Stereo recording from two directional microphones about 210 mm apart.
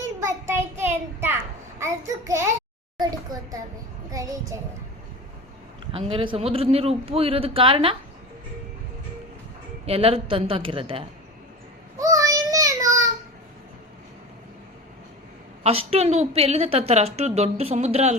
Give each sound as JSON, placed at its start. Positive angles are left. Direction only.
{"t": 0.2, "sound": "child singing", "side_deg": -10}
{"t": 1.8, "sound": "a child's voice", "side_deg": -15}
{"t": 3.3, "sound": "a sound", "side_deg": -20}
{"t": 4.1, "sound": "child singing", "side_deg": -15}
{"t": 5.9, "sound": "a woman's voice", "side_deg": -25}
{"t": 9.8, "sound": "a woman's voice", "side_deg": -30}
{"t": 11.9, "sound": "child singing", "side_deg": -15}
{"t": 15.6, "sound": "a woman's voice", "side_deg": -30}